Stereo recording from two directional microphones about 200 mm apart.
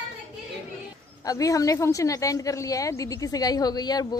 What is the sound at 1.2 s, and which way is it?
Speech, 15° left (ahead or behind).